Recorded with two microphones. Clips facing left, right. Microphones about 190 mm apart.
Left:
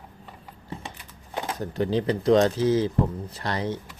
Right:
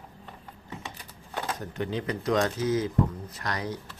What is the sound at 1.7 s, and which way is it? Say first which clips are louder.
Speech: left 8 dB; 30° left (ahead or behind).